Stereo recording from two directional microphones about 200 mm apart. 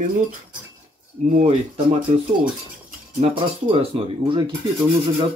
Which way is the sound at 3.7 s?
30° right (ahead or behind).